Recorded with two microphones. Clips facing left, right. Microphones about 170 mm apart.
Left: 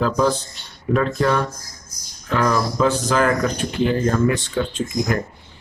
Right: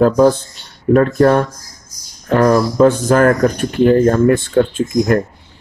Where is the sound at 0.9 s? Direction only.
50° right (ahead or behind).